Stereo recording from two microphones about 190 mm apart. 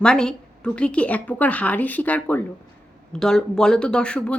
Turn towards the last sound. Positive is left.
turn(degrees=5)  # may be behind; listen again after turning